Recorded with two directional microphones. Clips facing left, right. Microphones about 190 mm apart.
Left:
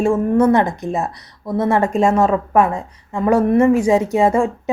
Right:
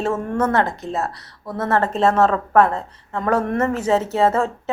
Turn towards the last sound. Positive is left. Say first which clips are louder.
# left 3 dB
turn(degrees=15)  # may be behind; listen again after turning